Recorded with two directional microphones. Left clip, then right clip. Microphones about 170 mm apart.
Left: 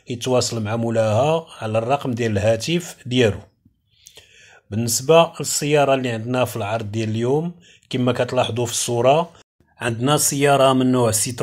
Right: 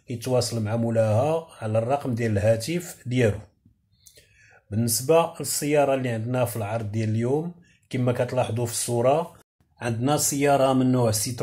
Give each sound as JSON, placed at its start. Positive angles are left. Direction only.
{"t": 0.1, "sound": "speech", "side_deg": 30}
{"t": 4.6, "sound": "speech", "side_deg": 30}